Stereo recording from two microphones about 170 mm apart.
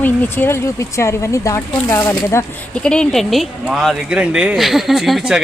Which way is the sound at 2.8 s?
5° left (ahead or behind).